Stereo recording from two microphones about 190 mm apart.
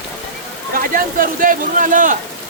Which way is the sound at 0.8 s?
50° right (ahead or behind).